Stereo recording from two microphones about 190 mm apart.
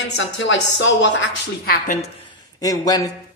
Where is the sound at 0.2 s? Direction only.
75° left (ahead or behind).